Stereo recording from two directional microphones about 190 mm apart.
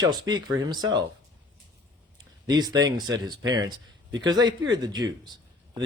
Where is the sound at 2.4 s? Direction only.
20° right (ahead or behind).